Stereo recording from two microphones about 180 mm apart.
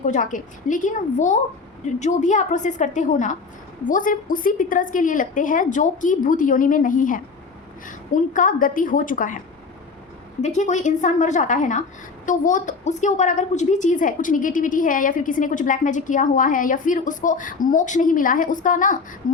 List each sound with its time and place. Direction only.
0.0 s a woman's voice: 45° left (ahead or behind)
10.4 s a woman's voice: 40° left (ahead or behind)